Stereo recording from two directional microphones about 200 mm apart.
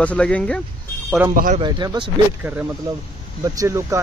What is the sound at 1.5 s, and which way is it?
Speech, 25° right (ahead or behind).